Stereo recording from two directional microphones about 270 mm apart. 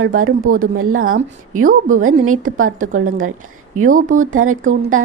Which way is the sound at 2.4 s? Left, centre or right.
Right.